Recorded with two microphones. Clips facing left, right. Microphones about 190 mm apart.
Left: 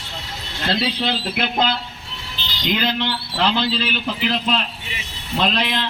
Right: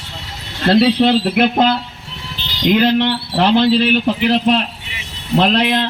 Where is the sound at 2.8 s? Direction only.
65° right (ahead or behind).